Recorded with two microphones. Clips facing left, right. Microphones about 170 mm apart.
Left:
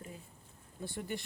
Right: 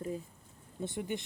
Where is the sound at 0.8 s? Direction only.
20° right (ahead or behind).